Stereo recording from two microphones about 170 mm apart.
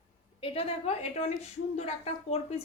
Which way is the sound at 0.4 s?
35° left (ahead or behind).